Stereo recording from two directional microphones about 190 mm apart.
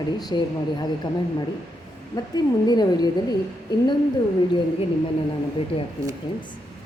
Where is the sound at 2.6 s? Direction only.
20° left (ahead or behind).